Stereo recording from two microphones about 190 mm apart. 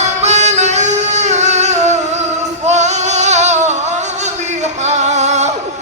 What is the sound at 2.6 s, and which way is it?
Singing, 35° right (ahead or behind).